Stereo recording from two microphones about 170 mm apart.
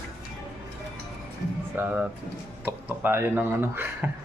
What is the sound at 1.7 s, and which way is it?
Speech, 10° right (ahead or behind).